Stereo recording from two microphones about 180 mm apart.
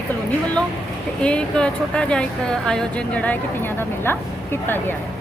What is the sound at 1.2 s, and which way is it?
Speech, 5° left (ahead or behind).